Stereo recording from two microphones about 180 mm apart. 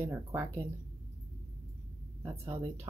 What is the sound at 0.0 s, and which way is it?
Speech, 15° right (ahead or behind).